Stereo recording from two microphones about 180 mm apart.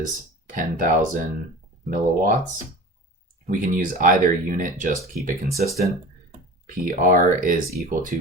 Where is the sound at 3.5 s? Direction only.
50° right (ahead or behind).